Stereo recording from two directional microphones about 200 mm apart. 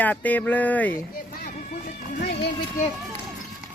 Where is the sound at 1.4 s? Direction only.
45° left (ahead or behind).